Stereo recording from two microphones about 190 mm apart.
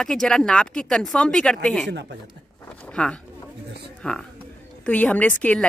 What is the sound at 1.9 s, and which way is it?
Speech, 60° right (ahead or behind).